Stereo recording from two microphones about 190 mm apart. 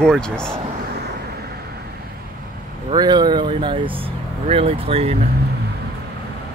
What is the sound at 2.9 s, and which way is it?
Speech, 20° right (ahead or behind).